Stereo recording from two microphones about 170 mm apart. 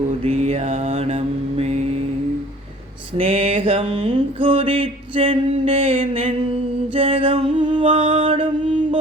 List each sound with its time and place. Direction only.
0.2 s mantra: 40° right (ahead or behind)
3.2 s a sound: 35° right (ahead or behind)
6.9 s music: 35° right (ahead or behind)